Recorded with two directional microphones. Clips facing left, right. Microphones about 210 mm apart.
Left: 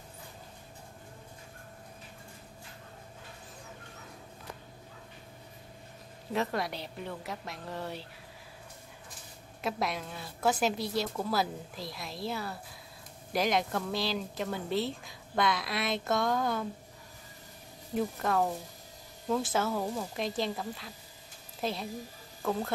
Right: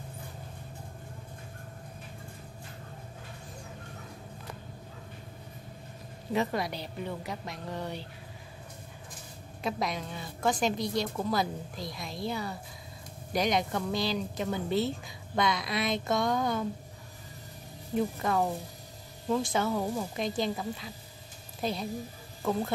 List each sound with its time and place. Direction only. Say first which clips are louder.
6.3 s speech: right 2 dB; centre (ahead or behind)
9.6 s speech: right 1 dB; 5° left (ahead or behind)
17.9 s a woman's voice: right 1 dB; centre (ahead or behind)